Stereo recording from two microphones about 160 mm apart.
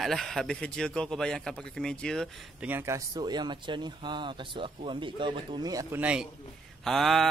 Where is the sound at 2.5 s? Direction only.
10° right (ahead or behind).